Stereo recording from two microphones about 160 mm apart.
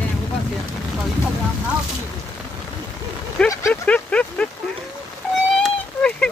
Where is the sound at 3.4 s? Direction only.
15° left (ahead or behind).